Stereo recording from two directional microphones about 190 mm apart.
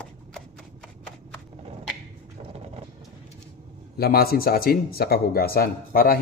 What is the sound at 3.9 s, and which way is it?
A man's voice, 55° left (ahead or behind).